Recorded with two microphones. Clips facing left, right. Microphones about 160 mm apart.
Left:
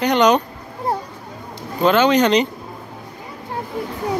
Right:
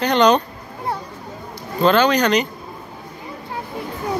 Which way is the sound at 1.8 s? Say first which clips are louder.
Left 1 dB; 15° left (ahead or behind).